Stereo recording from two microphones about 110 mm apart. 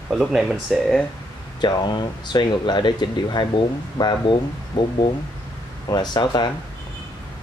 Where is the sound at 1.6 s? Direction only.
45° left (ahead or behind).